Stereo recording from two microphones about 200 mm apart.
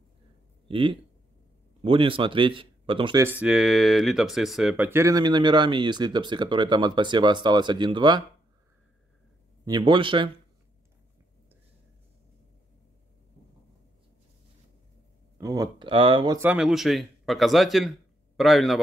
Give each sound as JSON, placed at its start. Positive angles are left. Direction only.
{"t": 0.7, "sound": "speech", "side_deg": -25}
{"t": 3.3, "sound": "speech", "side_deg": -5}
{"t": 9.7, "sound": "speech", "side_deg": -25}
{"t": 15.3, "sound": "speech", "side_deg": -20}
{"t": 16.3, "sound": "speech", "side_deg": -5}